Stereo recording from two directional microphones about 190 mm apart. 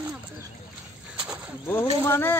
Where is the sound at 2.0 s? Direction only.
10° left (ahead or behind).